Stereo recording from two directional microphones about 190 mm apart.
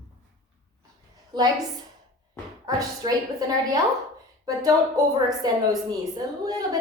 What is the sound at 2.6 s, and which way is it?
A woman's voice, 20° right (ahead or behind).